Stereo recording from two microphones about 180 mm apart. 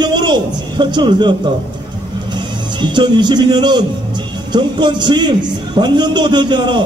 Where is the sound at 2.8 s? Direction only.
25° right (ahead or behind).